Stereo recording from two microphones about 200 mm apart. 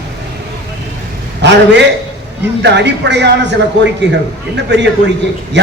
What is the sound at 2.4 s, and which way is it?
A man's voice, 60° right (ahead or behind).